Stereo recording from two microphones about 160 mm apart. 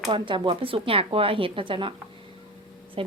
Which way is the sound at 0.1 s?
30° right (ahead or behind).